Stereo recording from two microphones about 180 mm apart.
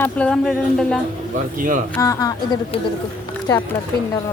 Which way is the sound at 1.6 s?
45° right (ahead or behind).